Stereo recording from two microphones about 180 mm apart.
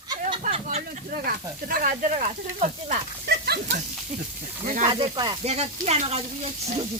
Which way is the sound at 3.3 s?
60° right (ahead or behind).